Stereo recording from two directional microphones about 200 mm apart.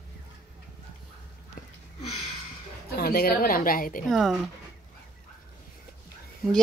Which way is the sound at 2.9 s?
50° left (ahead or behind).